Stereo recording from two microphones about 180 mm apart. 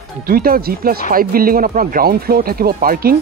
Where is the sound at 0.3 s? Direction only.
55° right (ahead or behind).